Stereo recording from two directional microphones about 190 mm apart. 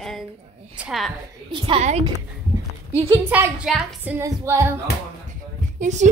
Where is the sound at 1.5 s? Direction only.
30° right (ahead or behind).